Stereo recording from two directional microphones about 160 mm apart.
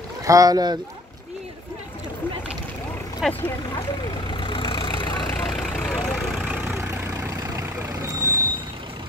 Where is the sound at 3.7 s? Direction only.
30° left (ahead or behind).